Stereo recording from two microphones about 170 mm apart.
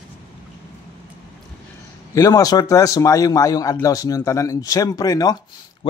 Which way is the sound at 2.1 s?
20° left (ahead or behind).